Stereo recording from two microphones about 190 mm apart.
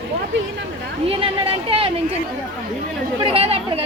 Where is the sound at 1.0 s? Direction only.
30° right (ahead or behind).